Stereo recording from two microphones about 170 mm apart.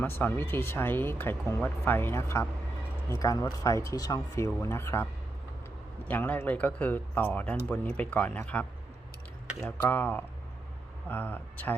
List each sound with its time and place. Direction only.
0.0 s speech: 10° left (ahead or behind)
6.1 s speech: 10° left (ahead or behind)
9.6 s speech: 10° left (ahead or behind)